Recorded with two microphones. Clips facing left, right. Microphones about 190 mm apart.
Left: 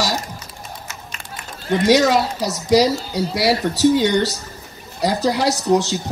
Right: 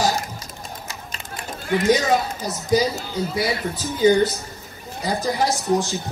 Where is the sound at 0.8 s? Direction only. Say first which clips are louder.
Even; 35° right (ahead or behind).